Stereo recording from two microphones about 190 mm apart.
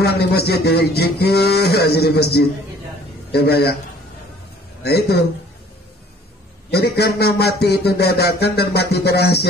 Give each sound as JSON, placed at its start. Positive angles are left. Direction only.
{"t": 0.0, "sound": "speech", "side_deg": 55}
{"t": 4.8, "sound": "speech", "side_deg": 60}
{"t": 6.7, "sound": "speech", "side_deg": 60}